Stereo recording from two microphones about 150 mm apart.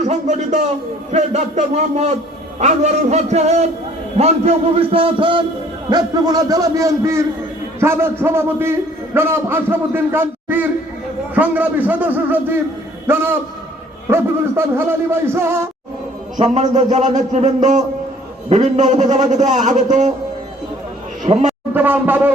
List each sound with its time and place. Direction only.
0.0 s a sound: 50° right (ahead or behind)
1.1 s a man's voice: 50° right (ahead or behind)
5.9 s a man's voice: 25° right (ahead or behind)
16.4 s a man's voice: 50° right (ahead or behind)
21.3 s a man's voice: 35° right (ahead or behind)
21.7 s a sound: 15° right (ahead or behind)